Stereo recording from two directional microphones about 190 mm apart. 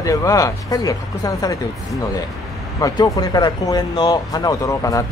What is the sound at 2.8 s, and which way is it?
Speech, 20° left (ahead or behind).